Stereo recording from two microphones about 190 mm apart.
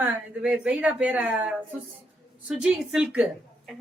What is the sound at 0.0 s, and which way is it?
A woman's voice, 5° right (ahead or behind).